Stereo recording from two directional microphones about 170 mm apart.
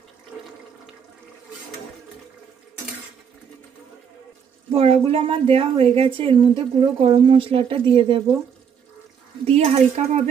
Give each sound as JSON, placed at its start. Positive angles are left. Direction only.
{"t": 4.7, "sound": "a woman's voice", "side_deg": -35}
{"t": 9.5, "sound": "a woman's voice", "side_deg": -40}